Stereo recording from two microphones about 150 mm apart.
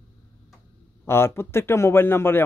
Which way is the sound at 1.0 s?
15° left (ahead or behind).